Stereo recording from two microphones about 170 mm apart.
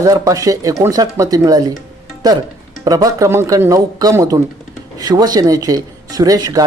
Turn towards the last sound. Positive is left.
turn(degrees=-20)  # may be behind; listen again after turning